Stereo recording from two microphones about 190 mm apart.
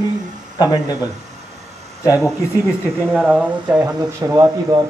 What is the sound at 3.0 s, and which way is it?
Speech, 5° left (ahead or behind).